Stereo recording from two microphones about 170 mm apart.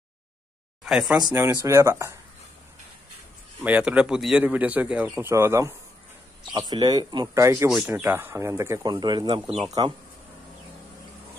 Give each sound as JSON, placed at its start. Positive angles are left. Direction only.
{"t": 0.8, "sound": "speech", "side_deg": 0}
{"t": 1.1, "sound": "speech", "side_deg": -20}
{"t": 3.6, "sound": "speech", "side_deg": -5}